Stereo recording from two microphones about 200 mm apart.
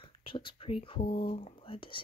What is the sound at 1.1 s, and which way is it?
Speech, 25° left (ahead or behind).